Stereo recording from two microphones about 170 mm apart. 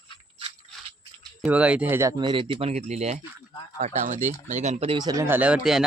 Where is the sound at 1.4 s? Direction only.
5° right (ahead or behind).